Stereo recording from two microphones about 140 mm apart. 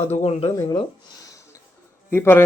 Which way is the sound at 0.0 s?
50° left (ahead or behind).